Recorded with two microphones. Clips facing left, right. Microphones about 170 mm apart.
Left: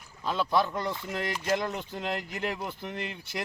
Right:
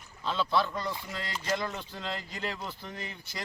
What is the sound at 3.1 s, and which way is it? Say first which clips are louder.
Speech: left 4 dB; 70° left (ahead or behind).